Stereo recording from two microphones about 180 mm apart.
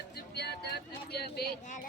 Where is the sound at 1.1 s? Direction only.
60° left (ahead or behind).